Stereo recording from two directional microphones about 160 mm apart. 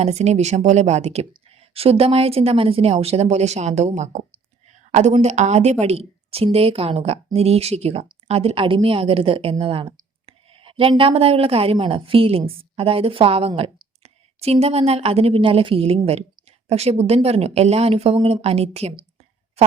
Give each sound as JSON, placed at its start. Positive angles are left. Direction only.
{"t": 0.0, "sound": "a woman's voice", "side_deg": -40}